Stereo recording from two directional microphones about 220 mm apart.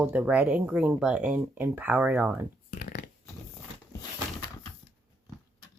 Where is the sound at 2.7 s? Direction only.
40° left (ahead or behind).